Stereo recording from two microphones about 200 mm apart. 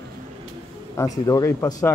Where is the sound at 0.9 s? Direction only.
15° left (ahead or behind).